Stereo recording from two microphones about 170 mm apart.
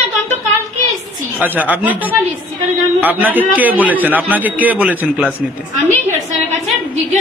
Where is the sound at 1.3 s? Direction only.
10° right (ahead or behind).